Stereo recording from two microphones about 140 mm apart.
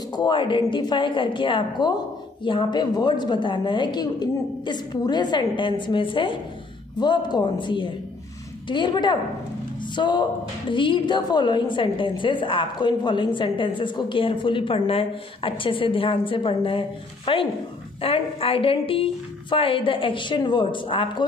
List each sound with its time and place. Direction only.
0.1 s a woman's voice: 35° left (ahead or behind)